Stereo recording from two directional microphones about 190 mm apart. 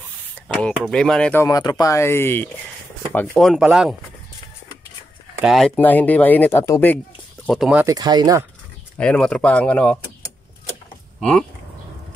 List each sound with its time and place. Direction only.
0.5 s speech: 5° left (ahead or behind)
5.4 s speech: centre (ahead or behind)
5.8 s speech: 10° left (ahead or behind)
7.4 s speech: centre (ahead or behind)
7.8 s speech: 20° right (ahead or behind)
8.9 s speech: 5° left (ahead or behind)